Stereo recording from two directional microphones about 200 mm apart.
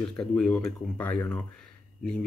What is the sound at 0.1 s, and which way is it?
Speech, 5° left (ahead or behind).